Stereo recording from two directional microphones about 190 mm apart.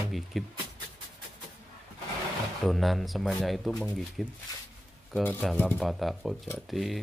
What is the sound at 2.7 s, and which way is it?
Speech, centre (ahead or behind).